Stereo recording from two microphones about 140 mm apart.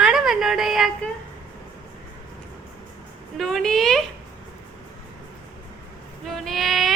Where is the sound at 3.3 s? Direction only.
5° left (ahead or behind).